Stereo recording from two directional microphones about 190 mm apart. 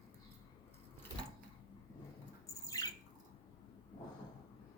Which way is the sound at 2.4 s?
20° left (ahead or behind).